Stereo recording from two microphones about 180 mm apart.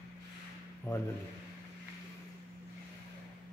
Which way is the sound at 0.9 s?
10° left (ahead or behind).